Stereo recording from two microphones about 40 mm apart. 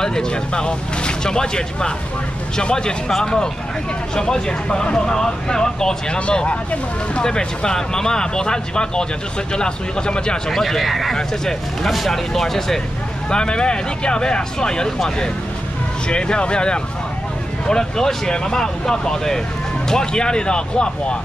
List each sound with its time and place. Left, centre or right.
0.0 s speech: centre
7.2 s speech: centre
10.5 s speech: centre
11.1 s speech: centre
13.3 s speech: left